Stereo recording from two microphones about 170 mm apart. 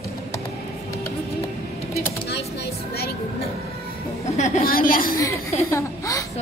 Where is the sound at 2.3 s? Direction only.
75° left (ahead or behind).